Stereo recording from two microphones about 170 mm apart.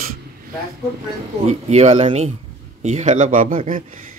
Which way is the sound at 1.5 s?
40° right (ahead or behind).